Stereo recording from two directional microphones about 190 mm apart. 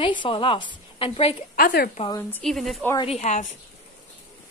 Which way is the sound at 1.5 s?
50° left (ahead or behind).